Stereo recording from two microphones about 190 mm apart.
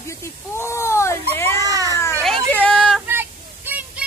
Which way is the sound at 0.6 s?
15° left (ahead or behind).